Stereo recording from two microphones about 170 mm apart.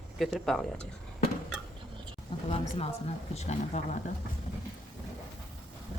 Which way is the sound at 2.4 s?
35° left (ahead or behind).